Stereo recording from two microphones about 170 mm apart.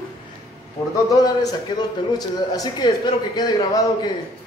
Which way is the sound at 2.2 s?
25° left (ahead or behind).